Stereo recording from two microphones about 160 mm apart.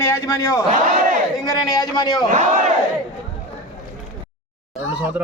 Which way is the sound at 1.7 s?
25° left (ahead or behind).